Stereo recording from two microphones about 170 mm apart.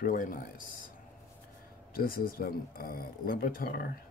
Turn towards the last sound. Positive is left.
turn(degrees=60)  # may be behind; listen again after turning